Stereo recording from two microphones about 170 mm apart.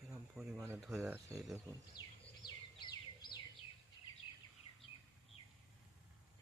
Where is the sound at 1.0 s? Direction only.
15° right (ahead or behind).